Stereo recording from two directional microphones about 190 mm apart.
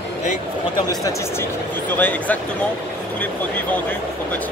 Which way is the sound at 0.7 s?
20° left (ahead or behind).